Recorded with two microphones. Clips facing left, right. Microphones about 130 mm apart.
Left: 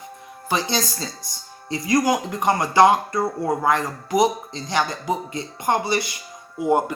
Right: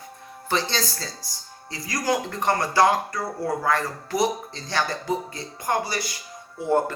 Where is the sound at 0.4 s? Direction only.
15° left (ahead or behind).